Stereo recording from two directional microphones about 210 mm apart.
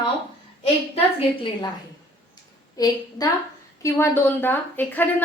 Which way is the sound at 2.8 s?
20° left (ahead or behind).